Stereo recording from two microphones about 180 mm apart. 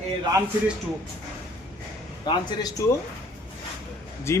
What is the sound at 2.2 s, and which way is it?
Speech, 25° left (ahead or behind).